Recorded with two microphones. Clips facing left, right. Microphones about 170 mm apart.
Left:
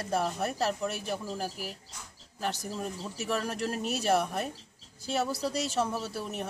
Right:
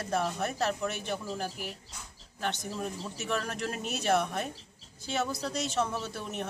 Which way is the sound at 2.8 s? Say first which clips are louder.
Even; centre (ahead or behind).